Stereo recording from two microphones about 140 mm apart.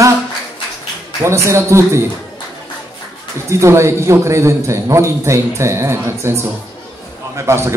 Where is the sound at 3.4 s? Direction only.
20° right (ahead or behind).